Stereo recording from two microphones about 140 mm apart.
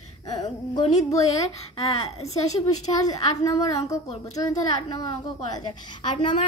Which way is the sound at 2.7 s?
25° left (ahead or behind).